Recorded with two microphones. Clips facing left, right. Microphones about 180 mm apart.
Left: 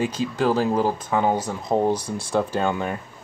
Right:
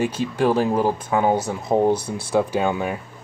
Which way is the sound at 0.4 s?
15° right (ahead or behind).